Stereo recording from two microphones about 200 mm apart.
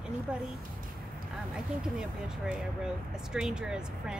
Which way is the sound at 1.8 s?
5° right (ahead or behind).